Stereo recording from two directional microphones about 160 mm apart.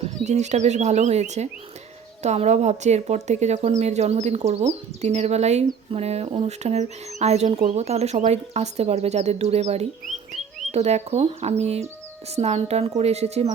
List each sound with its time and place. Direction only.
0.3 s speech: 45° right (ahead or behind)